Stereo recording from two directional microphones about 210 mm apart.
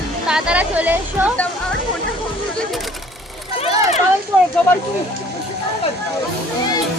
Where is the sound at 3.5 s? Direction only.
25° left (ahead or behind).